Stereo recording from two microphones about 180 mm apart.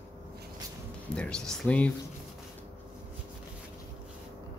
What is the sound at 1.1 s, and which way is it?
Speech, 5° left (ahead or behind).